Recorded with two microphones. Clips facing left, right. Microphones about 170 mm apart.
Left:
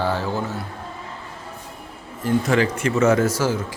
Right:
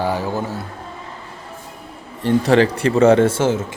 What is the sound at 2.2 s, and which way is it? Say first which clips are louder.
Speech: right 5 dB; 35° right (ahead or behind).